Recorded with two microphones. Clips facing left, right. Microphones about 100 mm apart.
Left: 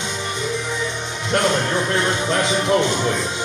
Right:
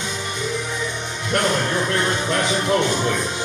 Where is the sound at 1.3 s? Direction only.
25° left (ahead or behind).